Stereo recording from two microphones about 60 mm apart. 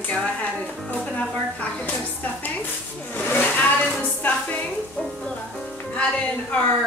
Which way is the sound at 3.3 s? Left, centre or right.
Left.